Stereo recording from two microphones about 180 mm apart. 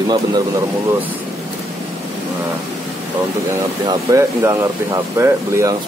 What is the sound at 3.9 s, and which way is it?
Speech, 15° right (ahead or behind).